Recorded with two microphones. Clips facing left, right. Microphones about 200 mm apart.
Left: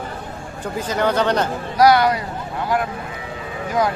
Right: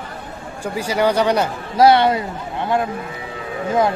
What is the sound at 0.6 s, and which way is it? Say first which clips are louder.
Speech: right 2 dB; 10° right (ahead or behind).